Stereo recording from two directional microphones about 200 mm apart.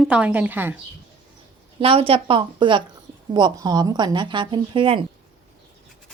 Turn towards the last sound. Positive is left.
turn(degrees=-25)  # may be behind; listen again after turning